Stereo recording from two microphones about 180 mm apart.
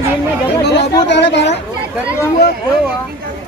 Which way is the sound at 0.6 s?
70° left (ahead or behind).